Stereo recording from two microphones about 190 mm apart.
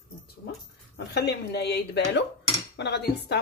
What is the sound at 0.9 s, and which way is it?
A woman's voice, 60° left (ahead or behind).